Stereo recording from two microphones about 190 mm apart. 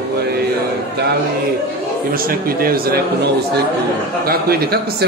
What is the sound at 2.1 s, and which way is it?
Speech, 50° right (ahead or behind).